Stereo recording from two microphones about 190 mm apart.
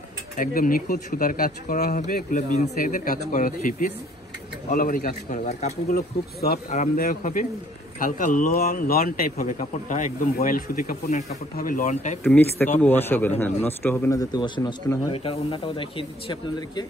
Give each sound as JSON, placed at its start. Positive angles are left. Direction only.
{"t": 0.4, "sound": "a man's voice", "side_deg": 50}
{"t": 5.9, "sound": "speech", "side_deg": 55}
{"t": 6.7, "sound": "a man's voice", "side_deg": 45}
{"t": 12.2, "sound": "a man's voice", "side_deg": 10}